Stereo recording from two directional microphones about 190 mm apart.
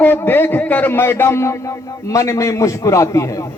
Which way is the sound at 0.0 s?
10° left (ahead or behind).